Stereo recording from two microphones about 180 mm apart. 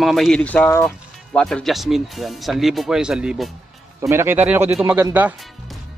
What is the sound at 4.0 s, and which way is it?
Speech, 15° right (ahead or behind).